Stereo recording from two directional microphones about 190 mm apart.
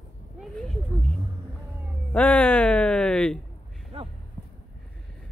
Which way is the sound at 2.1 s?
10° left (ahead or behind).